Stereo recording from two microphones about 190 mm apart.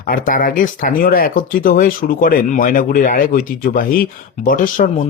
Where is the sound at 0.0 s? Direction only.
45° left (ahead or behind).